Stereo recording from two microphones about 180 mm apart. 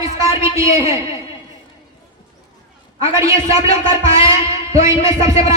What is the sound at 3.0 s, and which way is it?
A man's voice, 15° right (ahead or behind).